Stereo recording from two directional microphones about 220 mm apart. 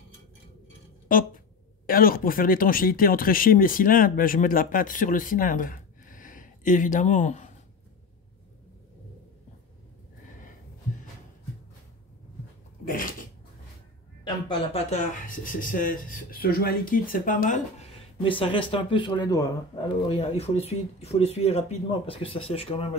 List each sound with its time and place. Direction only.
1.0 s a sound: 40° left (ahead or behind)
1.9 s speech: 40° left (ahead or behind)
12.8 s a sound: 40° left (ahead or behind)
14.2 s speech: 25° left (ahead or behind)
18.2 s speech: 25° left (ahead or behind)
20.1 s speech: 30° left (ahead or behind)